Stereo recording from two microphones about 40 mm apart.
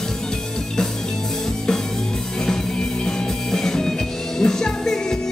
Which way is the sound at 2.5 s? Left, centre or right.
Centre.